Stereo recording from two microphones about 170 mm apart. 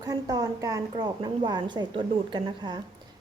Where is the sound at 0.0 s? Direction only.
20° right (ahead or behind).